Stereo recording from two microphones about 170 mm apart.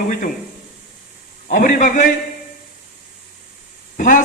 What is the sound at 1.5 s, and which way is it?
Speech, 45° left (ahead or behind).